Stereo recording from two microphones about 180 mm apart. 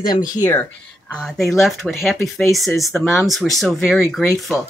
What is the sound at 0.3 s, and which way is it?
Speech, 15° left (ahead or behind).